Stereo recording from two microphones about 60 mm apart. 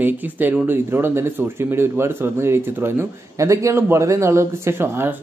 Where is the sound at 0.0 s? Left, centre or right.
Right.